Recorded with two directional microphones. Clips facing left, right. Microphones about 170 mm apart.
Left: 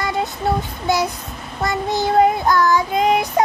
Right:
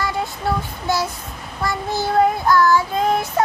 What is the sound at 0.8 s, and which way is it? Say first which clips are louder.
Child singing: left 3 dB; 15° left (ahead or behind).